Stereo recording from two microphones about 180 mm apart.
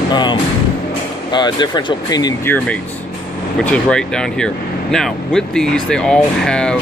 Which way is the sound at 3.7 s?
5° left (ahead or behind).